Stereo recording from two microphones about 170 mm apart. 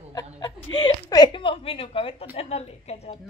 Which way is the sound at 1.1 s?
25° left (ahead or behind).